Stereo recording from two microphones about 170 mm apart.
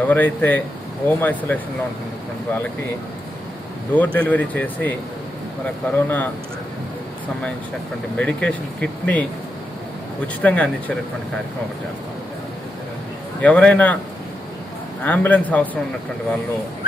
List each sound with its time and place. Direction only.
0.0 s speech: 10° left (ahead or behind)
3.9 s speech: 10° left (ahead or behind)
5.9 s speech: 10° left (ahead or behind)
8.2 s speech: 5° left (ahead or behind)
13.4 s speech: 10° left (ahead or behind)
15.0 s speech: 10° left (ahead or behind)